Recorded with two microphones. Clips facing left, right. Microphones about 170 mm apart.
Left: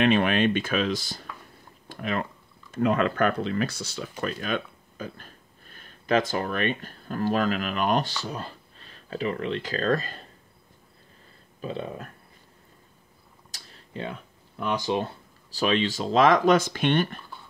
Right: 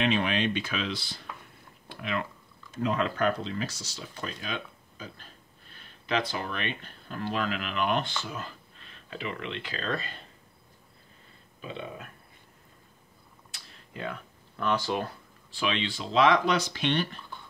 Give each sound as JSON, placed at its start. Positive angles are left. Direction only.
{"t": 0.0, "sound": "speech", "side_deg": 55}
{"t": 2.7, "sound": "speech", "side_deg": 55}
{"t": 11.6, "sound": "speech", "side_deg": 40}
{"t": 13.5, "sound": "a sound", "side_deg": 30}
{"t": 14.6, "sound": "speech", "side_deg": 15}
{"t": 15.5, "sound": "speech", "side_deg": 40}